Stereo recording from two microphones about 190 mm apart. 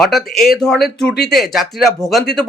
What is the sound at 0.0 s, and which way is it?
Speech, centre (ahead or behind).